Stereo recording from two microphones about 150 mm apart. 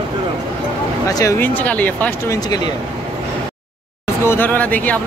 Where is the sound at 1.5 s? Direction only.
10° left (ahead or behind).